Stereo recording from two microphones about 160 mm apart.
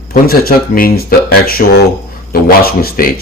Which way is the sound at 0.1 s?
70° left (ahead or behind).